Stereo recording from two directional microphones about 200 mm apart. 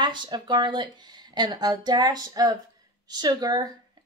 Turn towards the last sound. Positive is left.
turn(degrees=-20)  # may be behind; listen again after turning